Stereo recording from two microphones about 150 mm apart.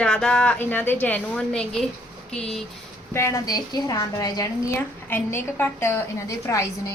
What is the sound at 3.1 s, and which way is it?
A woman's voice, 20° left (ahead or behind).